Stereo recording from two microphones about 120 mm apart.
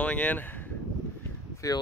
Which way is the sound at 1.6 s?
25° left (ahead or behind).